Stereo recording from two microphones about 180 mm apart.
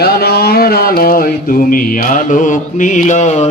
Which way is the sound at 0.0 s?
60° left (ahead or behind).